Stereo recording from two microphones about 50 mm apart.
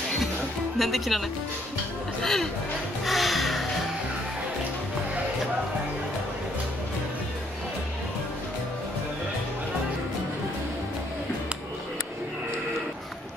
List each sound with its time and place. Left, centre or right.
0.7 s speech: centre
2.2 s speech: centre
3.1 s music: centre